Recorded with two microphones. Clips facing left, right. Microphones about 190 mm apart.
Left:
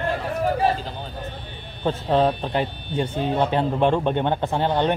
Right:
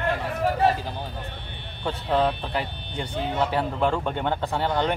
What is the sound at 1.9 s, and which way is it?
Speech, 25° left (ahead or behind).